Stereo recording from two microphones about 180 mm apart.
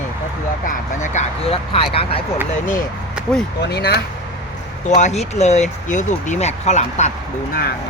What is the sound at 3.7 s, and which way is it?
Speech, 65° left (ahead or behind).